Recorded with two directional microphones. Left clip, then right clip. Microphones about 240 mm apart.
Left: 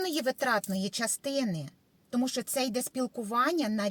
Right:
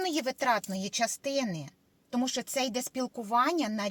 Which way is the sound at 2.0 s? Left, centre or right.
Centre.